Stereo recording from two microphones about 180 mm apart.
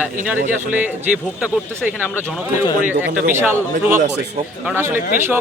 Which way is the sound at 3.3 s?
10° right (ahead or behind).